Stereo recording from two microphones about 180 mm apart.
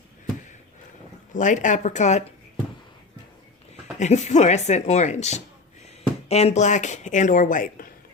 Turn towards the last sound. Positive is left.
turn(degrees=50)  # may be behind; listen again after turning